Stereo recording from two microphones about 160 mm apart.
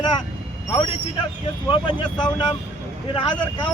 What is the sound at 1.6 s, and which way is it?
Speech, 30° left (ahead or behind).